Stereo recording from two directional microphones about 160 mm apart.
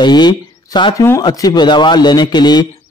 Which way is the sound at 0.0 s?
25° left (ahead or behind).